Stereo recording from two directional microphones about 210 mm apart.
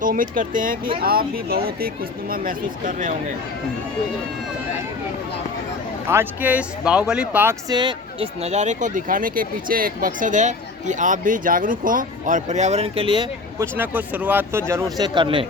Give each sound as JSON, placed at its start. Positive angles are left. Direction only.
{"t": 0.0, "sound": "speech", "side_deg": -40}
{"t": 6.1, "sound": "speech", "side_deg": -10}
{"t": 7.7, "sound": "speech", "side_deg": -20}
{"t": 13.7, "sound": "speech", "side_deg": -10}